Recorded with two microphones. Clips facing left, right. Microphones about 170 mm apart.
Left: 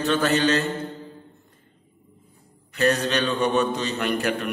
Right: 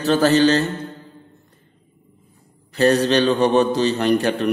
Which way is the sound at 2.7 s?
35° right (ahead or behind).